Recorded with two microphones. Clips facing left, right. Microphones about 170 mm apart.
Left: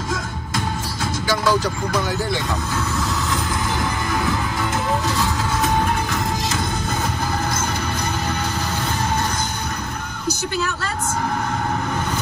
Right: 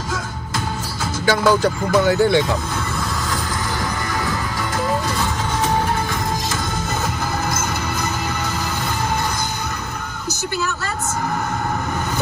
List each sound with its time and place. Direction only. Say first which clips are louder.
1.2 s speech: right 4 dB; 55° right (ahead or behind)